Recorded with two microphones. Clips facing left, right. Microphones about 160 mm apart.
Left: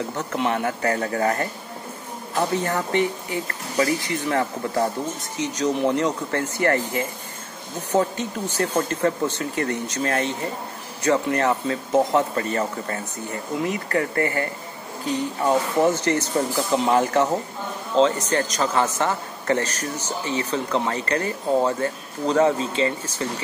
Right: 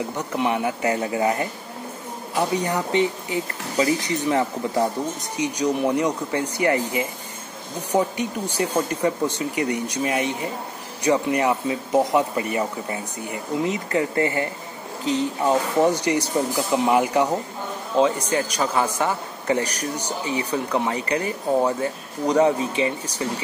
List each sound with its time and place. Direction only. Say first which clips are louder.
0.2 s a man's voice: right 1 dB; 15° right (ahead or behind)
15.8 s a man's voice: even; 15° right (ahead or behind)